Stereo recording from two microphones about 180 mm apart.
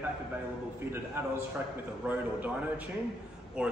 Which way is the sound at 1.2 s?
15° right (ahead or behind).